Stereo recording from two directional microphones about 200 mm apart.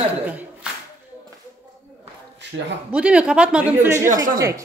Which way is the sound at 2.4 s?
60° right (ahead or behind).